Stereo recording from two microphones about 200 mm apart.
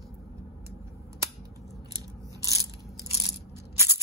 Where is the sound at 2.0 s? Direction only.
15° right (ahead or behind).